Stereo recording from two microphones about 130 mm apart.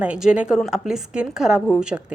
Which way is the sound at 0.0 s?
10° right (ahead or behind).